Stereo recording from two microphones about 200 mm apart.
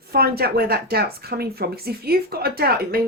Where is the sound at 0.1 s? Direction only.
50° right (ahead or behind).